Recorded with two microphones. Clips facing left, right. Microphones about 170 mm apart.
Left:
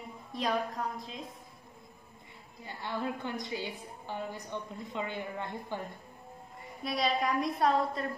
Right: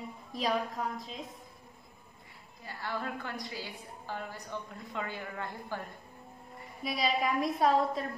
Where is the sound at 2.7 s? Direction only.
20° left (ahead or behind).